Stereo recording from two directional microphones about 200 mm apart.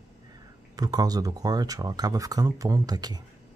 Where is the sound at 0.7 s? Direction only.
20° right (ahead or behind).